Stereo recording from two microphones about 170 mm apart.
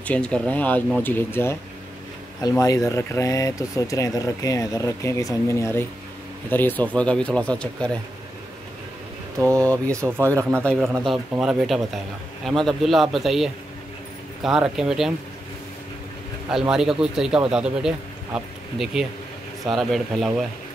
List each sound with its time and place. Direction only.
0.0 s speech: 5° left (ahead or behind)
9.4 s speech: 15° right (ahead or behind)
11.1 s a man's voice: centre (ahead or behind)
16.4 s a man's voice: 5° right (ahead or behind)